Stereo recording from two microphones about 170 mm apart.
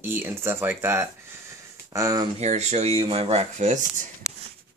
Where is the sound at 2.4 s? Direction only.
40° right (ahead or behind).